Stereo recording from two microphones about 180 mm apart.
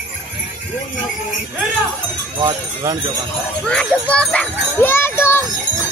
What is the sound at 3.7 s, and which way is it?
A child's voice, 5° left (ahead or behind).